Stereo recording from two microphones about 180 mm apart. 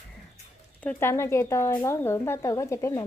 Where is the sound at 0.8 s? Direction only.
15° left (ahead or behind).